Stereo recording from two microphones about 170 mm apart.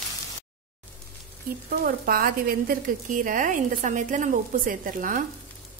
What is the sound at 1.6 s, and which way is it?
A woman's voice, 60° right (ahead or behind).